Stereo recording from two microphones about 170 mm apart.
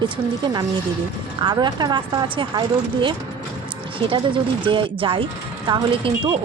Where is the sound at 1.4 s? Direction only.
25° right (ahead or behind).